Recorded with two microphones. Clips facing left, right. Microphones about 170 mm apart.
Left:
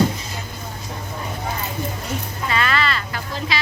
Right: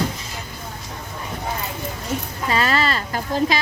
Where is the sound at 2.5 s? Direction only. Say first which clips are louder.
Right 2 dB; 35° right (ahead or behind).